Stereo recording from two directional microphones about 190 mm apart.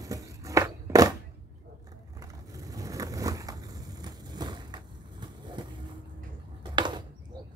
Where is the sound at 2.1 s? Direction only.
20° right (ahead or behind).